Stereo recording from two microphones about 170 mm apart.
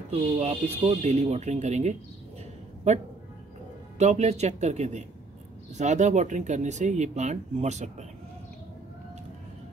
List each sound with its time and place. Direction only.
0.1 s speech: 40° right (ahead or behind)